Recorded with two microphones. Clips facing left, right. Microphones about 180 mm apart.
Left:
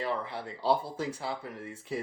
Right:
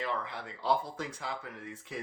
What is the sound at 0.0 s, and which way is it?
Speech, 30° left (ahead or behind).